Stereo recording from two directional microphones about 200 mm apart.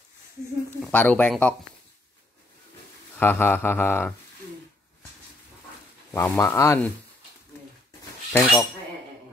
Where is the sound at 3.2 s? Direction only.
10° left (ahead or behind).